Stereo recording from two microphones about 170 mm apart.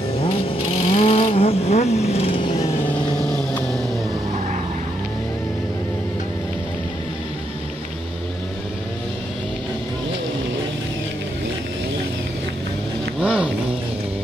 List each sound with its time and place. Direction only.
0.8 s vehicle: 35° left (ahead or behind)
3.3 s vehicle: 5° left (ahead or behind)
13.2 s a sound: 5° right (ahead or behind)